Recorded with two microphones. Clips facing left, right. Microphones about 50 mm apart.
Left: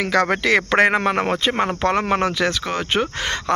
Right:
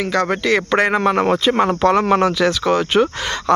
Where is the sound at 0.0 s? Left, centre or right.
Left.